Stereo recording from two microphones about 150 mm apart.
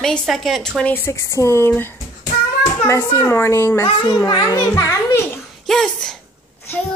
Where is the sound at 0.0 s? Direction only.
5° left (ahead or behind).